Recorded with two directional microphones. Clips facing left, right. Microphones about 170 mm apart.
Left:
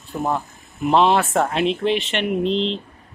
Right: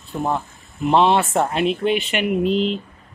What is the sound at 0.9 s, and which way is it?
Speech, centre (ahead or behind).